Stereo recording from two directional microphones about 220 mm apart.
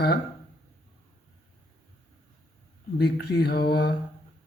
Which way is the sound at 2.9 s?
50° left (ahead or behind).